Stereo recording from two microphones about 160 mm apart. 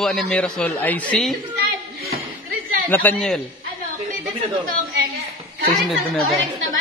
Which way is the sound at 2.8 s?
10° left (ahead or behind).